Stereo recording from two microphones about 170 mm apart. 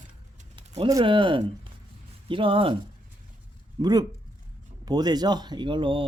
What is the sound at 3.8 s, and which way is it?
Speech, 25° right (ahead or behind).